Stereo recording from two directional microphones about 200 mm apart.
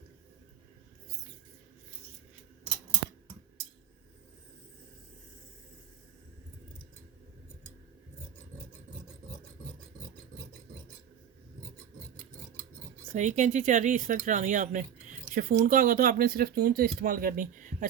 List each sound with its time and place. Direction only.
13.1 s speech: 35° right (ahead or behind)